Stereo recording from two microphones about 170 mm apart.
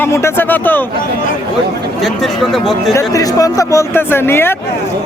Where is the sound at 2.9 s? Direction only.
20° left (ahead or behind).